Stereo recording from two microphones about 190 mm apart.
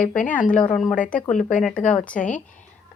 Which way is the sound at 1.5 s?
5° left (ahead or behind).